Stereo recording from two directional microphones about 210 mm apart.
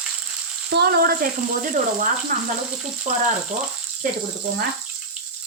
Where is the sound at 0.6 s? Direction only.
50° right (ahead or behind).